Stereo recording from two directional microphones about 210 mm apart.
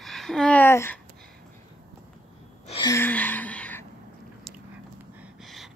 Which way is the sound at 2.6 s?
25° left (ahead or behind).